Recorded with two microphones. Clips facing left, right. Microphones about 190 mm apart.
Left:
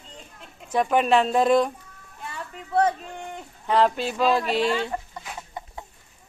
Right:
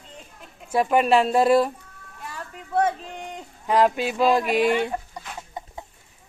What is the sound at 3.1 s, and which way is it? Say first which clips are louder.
Speech: even; 15° right (ahead or behind).